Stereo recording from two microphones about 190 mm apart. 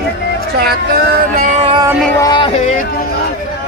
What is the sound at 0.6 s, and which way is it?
Speech, 55° right (ahead or behind).